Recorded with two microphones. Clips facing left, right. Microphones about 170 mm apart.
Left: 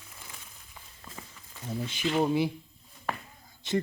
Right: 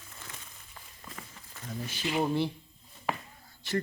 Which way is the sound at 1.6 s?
20° left (ahead or behind).